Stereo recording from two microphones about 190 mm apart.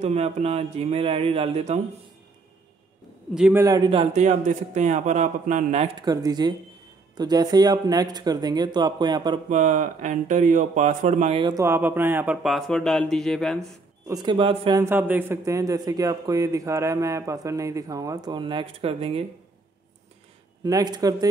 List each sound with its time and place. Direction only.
0.0 s a man's voice: 35° right (ahead or behind)
3.3 s speech: 5° right (ahead or behind)
3.6 s a man's voice: 20° right (ahead or behind)
6.0 s speech: 20° right (ahead or behind)
9.5 s a man's voice: 40° right (ahead or behind)
11.4 s speech: 15° right (ahead or behind); by 13.7 s centre (ahead or behind)
14.0 s speech: 20° right (ahead or behind)
14.8 s speech: 10° right (ahead or behind); by 19.2 s 30° right (ahead or behind)
20.6 s speech: 20° right (ahead or behind)